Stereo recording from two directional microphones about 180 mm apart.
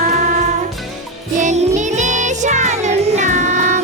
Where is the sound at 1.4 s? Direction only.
40° right (ahead or behind).